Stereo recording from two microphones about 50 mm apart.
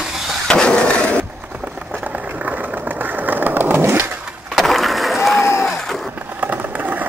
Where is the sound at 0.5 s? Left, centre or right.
Centre.